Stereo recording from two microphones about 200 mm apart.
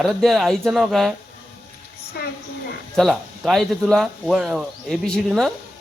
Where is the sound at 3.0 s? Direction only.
Centre (ahead or behind).